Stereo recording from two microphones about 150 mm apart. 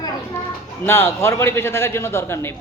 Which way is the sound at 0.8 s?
15° left (ahead or behind).